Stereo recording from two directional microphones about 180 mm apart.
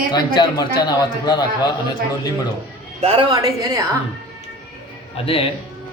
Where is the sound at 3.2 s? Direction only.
20° right (ahead or behind).